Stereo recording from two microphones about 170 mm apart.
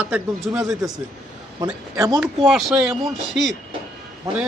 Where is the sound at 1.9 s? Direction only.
20° right (ahead or behind).